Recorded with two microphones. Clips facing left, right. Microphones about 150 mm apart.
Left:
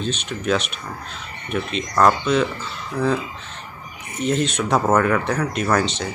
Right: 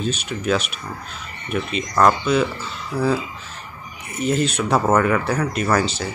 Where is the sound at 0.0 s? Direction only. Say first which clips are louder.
Right 1 dB; 5° right (ahead or behind).